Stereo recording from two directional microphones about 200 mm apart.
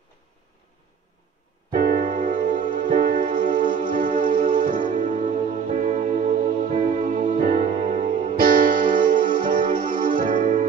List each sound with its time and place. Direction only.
1.7 s music: 45° right (ahead or behind)